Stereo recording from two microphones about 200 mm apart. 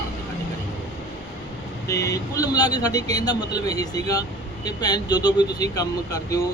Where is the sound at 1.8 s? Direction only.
15° left (ahead or behind).